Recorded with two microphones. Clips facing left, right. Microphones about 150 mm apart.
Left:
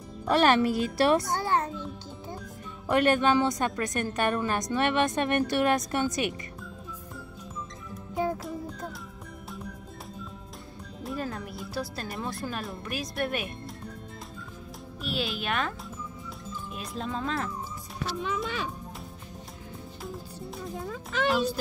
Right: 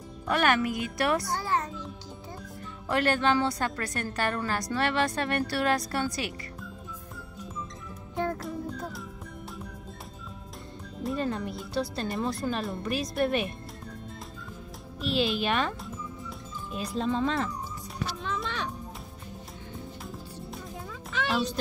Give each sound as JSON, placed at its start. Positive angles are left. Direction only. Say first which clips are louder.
{"t": 0.3, "sound": "a child's voice", "louder": "left 3 dB", "side_deg": 30}
{"t": 2.9, "sound": "a woman's voice", "louder": "left 3 dB", "side_deg": 20}
{"t": 8.2, "sound": "music", "louder": "left 1 dB", "side_deg": 5}
{"t": 11.0, "sound": "speech", "louder": "right 4 dB", "side_deg": 0}
{"t": 15.0, "sound": "speech", "louder": "right 5 dB", "side_deg": 0}
{"t": 16.7, "sound": "speech", "louder": "right 6 dB", "side_deg": 0}
{"t": 20.0, "sound": "music", "louder": "left 2 dB", "side_deg": 0}
{"t": 20.8, "sound": "music", "louder": "left 4 dB", "side_deg": 45}